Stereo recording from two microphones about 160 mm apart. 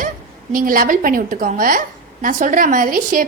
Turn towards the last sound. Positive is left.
turn(degrees=-60)  # may be behind; listen again after turning